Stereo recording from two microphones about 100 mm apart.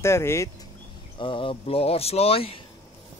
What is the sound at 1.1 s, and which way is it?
Speech, 60° left (ahead or behind).